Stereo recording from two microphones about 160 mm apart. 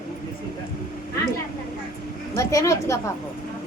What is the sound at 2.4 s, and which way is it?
Speech, 20° left (ahead or behind).